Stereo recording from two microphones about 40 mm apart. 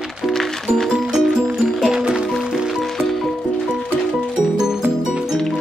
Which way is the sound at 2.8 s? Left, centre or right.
Centre.